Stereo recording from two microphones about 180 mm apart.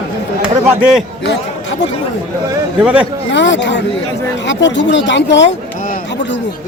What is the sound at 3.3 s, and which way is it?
Speech, 85° left.